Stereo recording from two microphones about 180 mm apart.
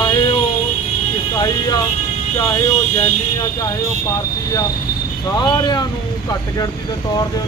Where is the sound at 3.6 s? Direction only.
20° left (ahead or behind).